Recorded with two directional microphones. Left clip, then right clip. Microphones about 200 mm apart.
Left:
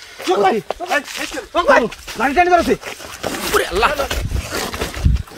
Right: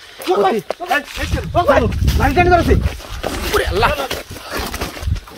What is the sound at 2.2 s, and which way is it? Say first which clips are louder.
Speech: even; 20° right (ahead or behind).